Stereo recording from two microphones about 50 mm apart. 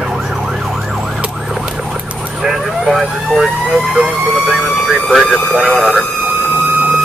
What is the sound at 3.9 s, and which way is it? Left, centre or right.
Speech, right.